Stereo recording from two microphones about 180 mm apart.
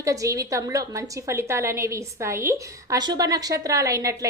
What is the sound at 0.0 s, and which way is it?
A woman's voice, 20° right (ahead or behind).